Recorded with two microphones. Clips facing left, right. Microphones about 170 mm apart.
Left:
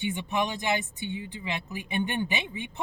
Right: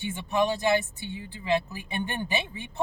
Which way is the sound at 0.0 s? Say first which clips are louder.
Right 2 dB; 15° left (ahead or behind).